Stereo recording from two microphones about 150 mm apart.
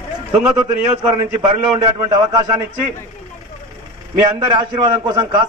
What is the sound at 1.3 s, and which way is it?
Speech, 35° right (ahead or behind).